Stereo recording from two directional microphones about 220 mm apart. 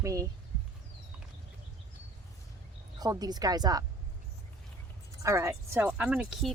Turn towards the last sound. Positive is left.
turn(degrees=-5)  # may be behind; listen again after turning